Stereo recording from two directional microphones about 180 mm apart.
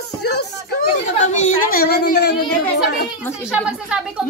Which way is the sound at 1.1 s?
40° left (ahead or behind).